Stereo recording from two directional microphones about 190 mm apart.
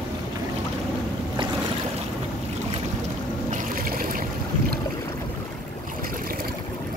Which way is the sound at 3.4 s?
45° right (ahead or behind).